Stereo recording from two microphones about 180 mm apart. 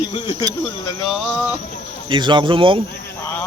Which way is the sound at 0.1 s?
25° left (ahead or behind).